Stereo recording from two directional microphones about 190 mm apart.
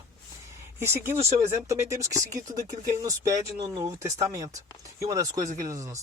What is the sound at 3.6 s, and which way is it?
Speech, 15° right (ahead or behind).